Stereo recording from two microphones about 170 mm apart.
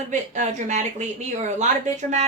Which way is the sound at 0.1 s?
45° right (ahead or behind).